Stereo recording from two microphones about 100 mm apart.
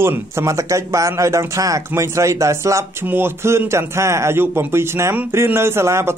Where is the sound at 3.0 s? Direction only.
20° right (ahead or behind).